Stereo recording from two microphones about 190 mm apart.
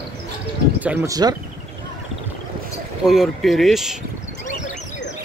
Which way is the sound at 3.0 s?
Centre (ahead or behind).